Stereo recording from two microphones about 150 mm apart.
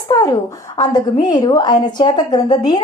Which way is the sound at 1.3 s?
30° left (ahead or behind).